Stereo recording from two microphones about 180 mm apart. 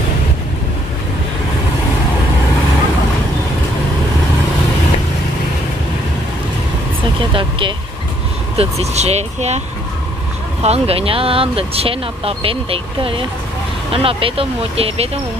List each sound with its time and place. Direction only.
7.3 s speech: 30° right (ahead or behind)
10.6 s speech: 35° right (ahead or behind)